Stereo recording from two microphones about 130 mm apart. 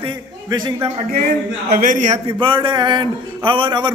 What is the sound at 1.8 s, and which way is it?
Speech, 80° right.